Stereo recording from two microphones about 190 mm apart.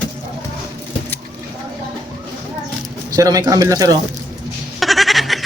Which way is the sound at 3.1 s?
20° right (ahead or behind).